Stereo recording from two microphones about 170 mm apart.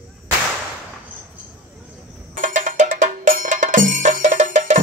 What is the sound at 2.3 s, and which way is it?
Music, 45° right (ahead or behind).